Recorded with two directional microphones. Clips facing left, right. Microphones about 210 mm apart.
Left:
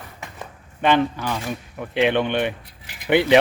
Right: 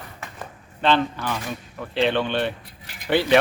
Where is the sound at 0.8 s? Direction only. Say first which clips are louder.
Left 2 dB; 15° left (ahead or behind).